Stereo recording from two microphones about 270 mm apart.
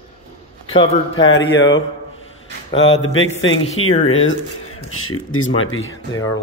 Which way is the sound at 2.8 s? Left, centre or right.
Left.